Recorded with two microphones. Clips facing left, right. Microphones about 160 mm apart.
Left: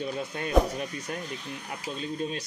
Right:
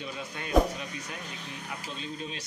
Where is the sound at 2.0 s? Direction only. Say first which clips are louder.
Left 6 dB; 45° left (ahead or behind).